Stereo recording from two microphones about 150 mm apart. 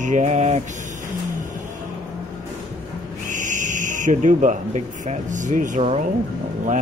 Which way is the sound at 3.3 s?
60° right (ahead or behind).